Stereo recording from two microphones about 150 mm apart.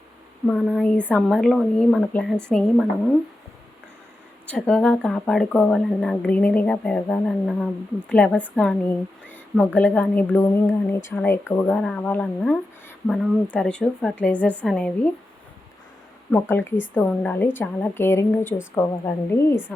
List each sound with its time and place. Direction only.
0.4 s speech: 5° left (ahead or behind)
4.4 s speech: 10° left (ahead or behind)
9.7 s speech: 10° left (ahead or behind)
16.3 s speech: 15° left (ahead or behind)